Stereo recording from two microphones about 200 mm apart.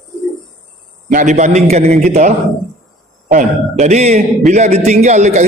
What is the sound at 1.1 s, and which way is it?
A man's voice, 35° right (ahead or behind).